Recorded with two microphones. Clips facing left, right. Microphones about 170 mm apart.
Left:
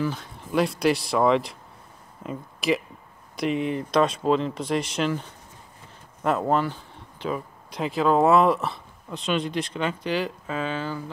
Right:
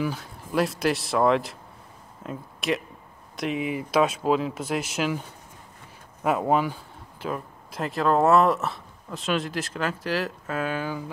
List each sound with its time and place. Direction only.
0.0 s speech: 5° right (ahead or behind)